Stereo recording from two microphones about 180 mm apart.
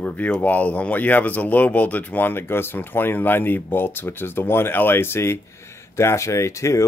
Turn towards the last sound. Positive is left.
turn(degrees=15)  # may be behind; listen again after turning